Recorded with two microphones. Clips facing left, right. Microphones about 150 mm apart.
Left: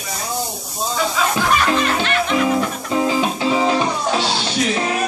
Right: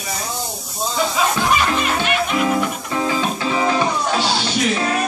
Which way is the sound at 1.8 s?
15° right (ahead or behind).